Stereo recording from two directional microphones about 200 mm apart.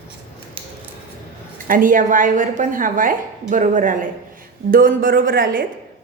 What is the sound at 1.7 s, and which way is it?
A woman's voice, 45° right (ahead or behind).